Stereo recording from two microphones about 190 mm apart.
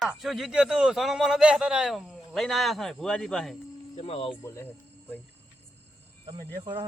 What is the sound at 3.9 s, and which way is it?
Speech, 35° left (ahead or behind).